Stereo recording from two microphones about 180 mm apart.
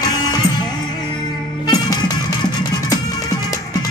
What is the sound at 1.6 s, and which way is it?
Music, 20° left (ahead or behind).